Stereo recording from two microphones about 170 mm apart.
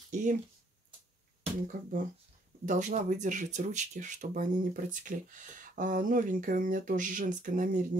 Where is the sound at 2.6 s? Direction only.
45° right (ahead or behind).